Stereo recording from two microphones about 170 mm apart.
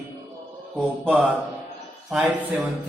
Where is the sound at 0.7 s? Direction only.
Centre (ahead or behind).